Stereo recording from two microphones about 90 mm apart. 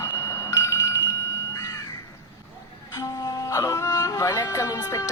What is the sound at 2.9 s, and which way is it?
Music, 45° left (ahead or behind).